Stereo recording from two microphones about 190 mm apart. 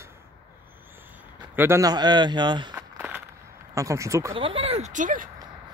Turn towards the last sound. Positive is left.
turn(degrees=-45)  # may be behind; listen again after turning